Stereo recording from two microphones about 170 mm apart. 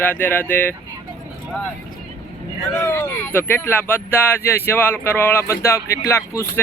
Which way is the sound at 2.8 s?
15° left (ahead or behind).